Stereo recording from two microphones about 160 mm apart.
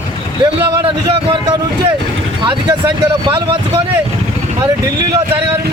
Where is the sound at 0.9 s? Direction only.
35° right (ahead or behind).